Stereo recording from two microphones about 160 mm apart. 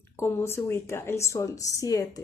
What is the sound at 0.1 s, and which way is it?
A woman's voice, 15° left (ahead or behind).